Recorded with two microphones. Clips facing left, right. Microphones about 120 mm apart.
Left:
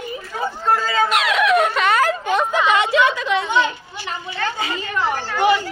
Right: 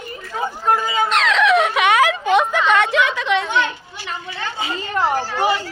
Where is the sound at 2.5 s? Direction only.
5° left (ahead or behind).